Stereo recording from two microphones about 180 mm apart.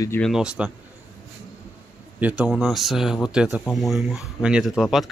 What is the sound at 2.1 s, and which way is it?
Speech, 5° right (ahead or behind).